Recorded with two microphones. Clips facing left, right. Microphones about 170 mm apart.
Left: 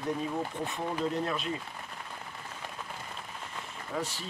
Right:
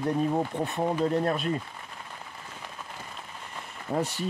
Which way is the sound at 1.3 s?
50° right (ahead or behind).